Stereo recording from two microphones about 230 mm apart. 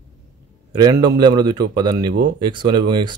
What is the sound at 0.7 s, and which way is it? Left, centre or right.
A man's voice, centre.